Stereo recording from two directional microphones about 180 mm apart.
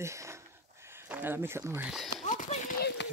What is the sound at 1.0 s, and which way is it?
Speech, 10° right (ahead or behind).